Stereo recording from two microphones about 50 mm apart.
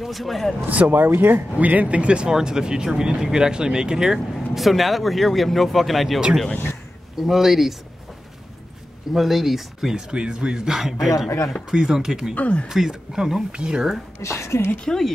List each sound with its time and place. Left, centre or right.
0.0 s speech: centre
0.7 s speech: right
1.6 s speech: right; by 4.2 s centre
4.6 s speech: centre
9.1 s speech: centre
10.1 s speech: centre
11.2 s speech: left
11.7 s speech: centre
12.4 s speech: left
12.6 s speech: centre
13.5 s speech: centre
14.2 s a woman's voice: left
14.9 s speech: centre